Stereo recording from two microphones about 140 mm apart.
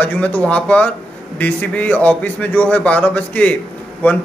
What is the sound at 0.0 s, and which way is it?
A man's voice, 10° left (ahead or behind).